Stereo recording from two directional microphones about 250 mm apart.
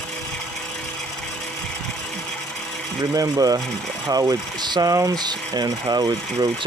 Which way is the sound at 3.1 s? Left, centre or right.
Centre.